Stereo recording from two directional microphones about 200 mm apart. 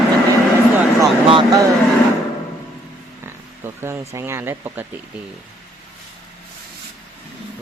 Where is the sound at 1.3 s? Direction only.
25° right (ahead or behind).